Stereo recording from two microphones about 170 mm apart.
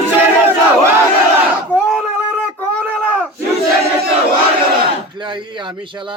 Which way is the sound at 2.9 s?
10° left (ahead or behind).